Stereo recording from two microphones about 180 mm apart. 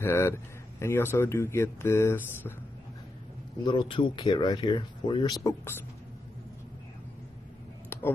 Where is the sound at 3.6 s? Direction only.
25° left (ahead or behind).